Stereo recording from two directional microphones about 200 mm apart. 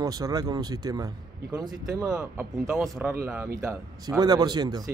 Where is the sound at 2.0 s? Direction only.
5° right (ahead or behind).